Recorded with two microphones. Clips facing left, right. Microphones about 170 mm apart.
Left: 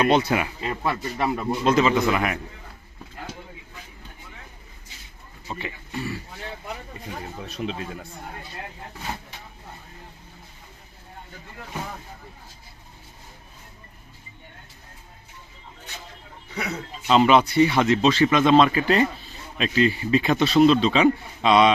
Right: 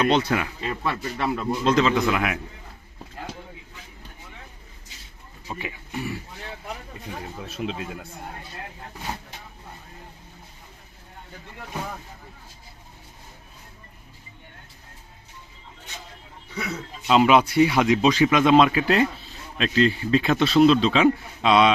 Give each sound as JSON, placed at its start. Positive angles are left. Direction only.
{"t": 0.0, "sound": "a man's voice", "side_deg": 10}
{"t": 0.6, "sound": "speech", "side_deg": 30}
{"t": 0.9, "sound": "a man's voice", "side_deg": 15}
{"t": 5.5, "sound": "speech", "side_deg": -10}
{"t": 6.9, "sound": "speech", "side_deg": 0}
{"t": 17.1, "sound": "speech", "side_deg": -5}